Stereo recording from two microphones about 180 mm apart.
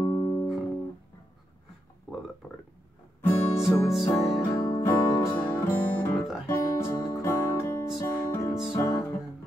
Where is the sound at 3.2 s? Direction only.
15° left (ahead or behind).